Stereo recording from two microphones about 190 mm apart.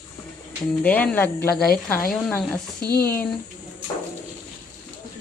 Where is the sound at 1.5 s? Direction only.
55° left (ahead or behind).